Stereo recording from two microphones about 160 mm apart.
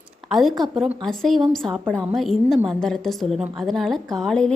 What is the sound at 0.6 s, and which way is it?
A woman's voice, centre (ahead or behind).